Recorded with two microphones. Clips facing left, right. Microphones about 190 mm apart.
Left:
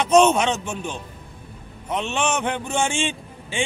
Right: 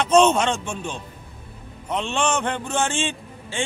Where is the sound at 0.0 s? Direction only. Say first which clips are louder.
Left 1 dB; 10° left (ahead or behind).